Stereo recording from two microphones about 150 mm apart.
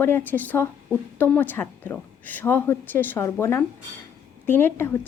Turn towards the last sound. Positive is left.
turn(degrees=15)  # may be behind; listen again after turning